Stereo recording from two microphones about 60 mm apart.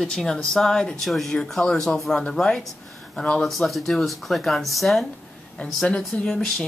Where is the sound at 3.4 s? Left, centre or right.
Centre.